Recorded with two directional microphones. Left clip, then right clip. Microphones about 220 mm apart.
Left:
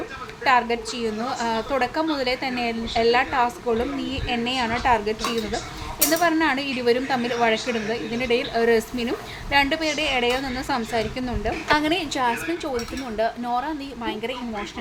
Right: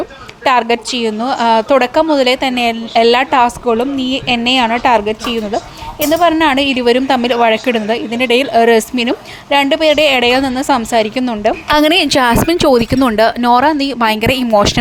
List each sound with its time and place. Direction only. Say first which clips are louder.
0.4 s a woman's voice: right 8 dB; 40° right (ahead or behind)